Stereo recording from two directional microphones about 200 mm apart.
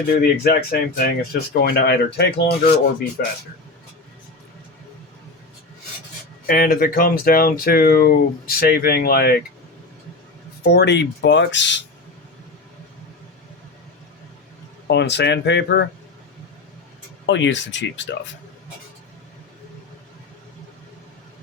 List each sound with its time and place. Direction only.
0.1 s speech: 50° left (ahead or behind)
6.5 s speech: 50° left (ahead or behind)
10.6 s speech: 55° left (ahead or behind)
14.8 s speech: 60° left (ahead or behind)
17.2 s speech: 65° left (ahead or behind)